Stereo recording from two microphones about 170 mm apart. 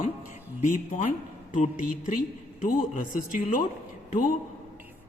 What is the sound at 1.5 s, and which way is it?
Speech, 50° left (ahead or behind).